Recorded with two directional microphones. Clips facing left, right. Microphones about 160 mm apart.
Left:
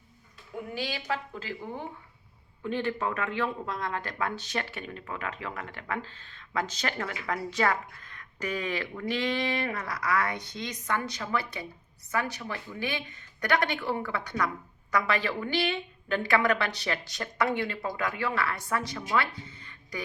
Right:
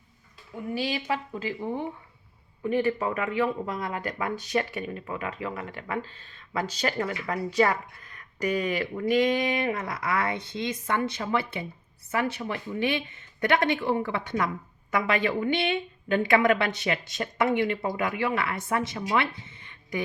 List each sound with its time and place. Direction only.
0.7 s speech: 10° right (ahead or behind)
2.6 s a woman's voice: 10° right (ahead or behind)